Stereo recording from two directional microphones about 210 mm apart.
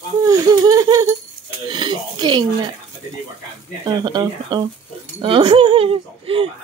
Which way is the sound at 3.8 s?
20° right (ahead or behind).